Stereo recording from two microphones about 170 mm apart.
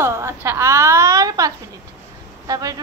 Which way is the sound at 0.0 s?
15° right (ahead or behind).